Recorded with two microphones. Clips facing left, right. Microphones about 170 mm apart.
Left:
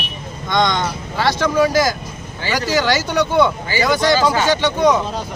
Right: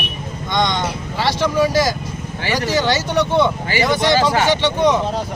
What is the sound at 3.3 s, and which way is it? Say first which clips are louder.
Speech: left 1 dB; 25° right (ahead or behind).